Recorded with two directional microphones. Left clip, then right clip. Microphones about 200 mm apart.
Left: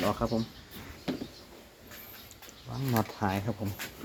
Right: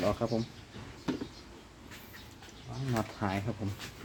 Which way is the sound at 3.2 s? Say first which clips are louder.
Left 2 dB; 20° left (ahead or behind).